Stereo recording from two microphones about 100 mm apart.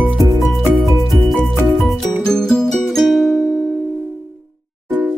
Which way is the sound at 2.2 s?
5° left (ahead or behind).